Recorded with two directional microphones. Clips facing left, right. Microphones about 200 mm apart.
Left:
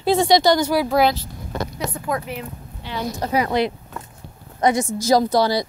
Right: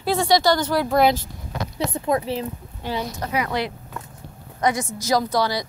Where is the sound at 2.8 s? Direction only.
45° right (ahead or behind).